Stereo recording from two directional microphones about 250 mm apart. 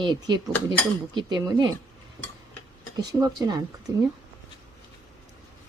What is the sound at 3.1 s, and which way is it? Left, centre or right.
Speech, centre.